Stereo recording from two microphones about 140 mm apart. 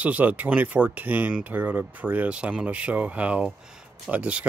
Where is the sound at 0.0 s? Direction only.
10° right (ahead or behind).